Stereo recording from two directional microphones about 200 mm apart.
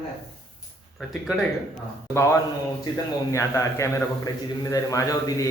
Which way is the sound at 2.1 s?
15° left (ahead or behind).